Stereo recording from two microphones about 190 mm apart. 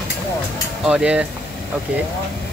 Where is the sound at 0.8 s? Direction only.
5° right (ahead or behind).